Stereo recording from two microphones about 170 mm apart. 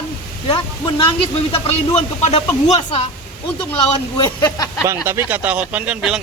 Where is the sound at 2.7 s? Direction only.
35° left (ahead or behind).